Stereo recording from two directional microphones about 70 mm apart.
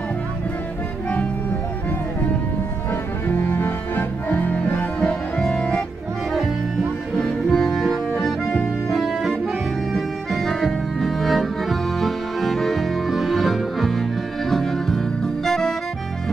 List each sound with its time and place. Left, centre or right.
3.3 s music: left
7.2 s music: centre